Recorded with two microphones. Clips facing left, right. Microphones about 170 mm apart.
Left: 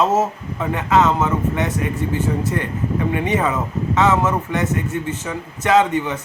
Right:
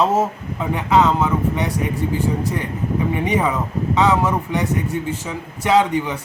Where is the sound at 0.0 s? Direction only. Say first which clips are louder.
Even; 15° right (ahead or behind).